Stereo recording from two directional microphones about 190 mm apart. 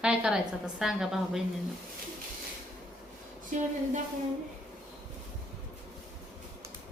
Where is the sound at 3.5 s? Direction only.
40° right (ahead or behind).